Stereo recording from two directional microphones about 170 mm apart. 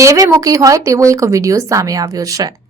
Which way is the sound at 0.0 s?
20° right (ahead or behind).